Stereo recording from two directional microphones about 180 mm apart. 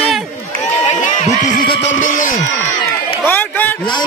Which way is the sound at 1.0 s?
45° left (ahead or behind).